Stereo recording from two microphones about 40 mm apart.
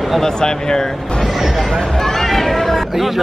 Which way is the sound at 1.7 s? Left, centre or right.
Centre.